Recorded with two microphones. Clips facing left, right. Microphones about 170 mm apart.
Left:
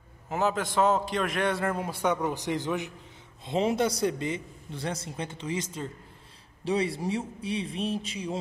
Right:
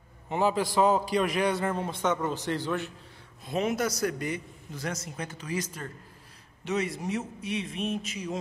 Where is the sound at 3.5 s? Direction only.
25° left (ahead or behind).